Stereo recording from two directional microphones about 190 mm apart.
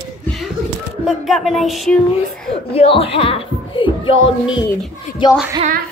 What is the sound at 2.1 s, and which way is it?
Speech, 30° left (ahead or behind).